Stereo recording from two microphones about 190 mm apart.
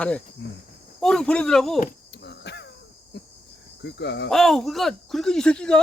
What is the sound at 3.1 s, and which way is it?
Cricket, 60° left (ahead or behind).